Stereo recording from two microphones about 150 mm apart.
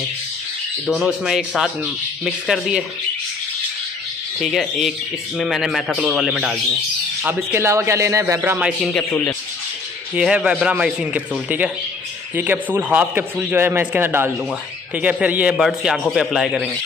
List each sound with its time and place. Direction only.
0.8 s a man's voice: 5° right (ahead or behind)
4.4 s a man's voice: centre (ahead or behind)
7.2 s a man's voice: 15° right (ahead or behind)
8.9 s a man's voice: 5° left (ahead or behind)
10.1 s a man's voice: 5° right (ahead or behind)